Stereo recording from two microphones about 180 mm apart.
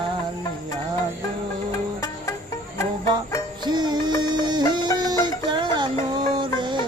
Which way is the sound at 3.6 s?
25° right (ahead or behind).